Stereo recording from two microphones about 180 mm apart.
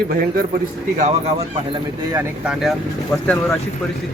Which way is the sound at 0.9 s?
35° right (ahead or behind).